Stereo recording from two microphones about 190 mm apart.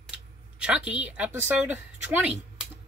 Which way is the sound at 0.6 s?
5° right (ahead or behind).